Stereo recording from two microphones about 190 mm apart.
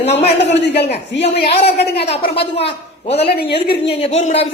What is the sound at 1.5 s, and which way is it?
Speech, 30° left (ahead or behind).